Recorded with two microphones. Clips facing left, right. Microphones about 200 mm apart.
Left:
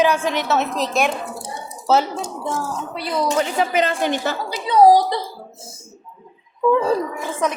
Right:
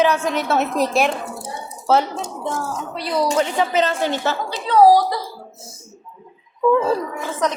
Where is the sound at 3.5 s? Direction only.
10° left (ahead or behind).